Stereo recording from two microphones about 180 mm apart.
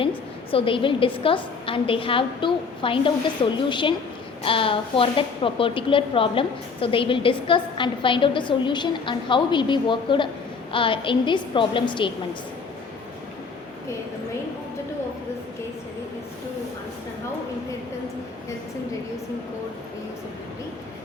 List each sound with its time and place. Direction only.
0.5 s a woman's voice: 30° left (ahead or behind)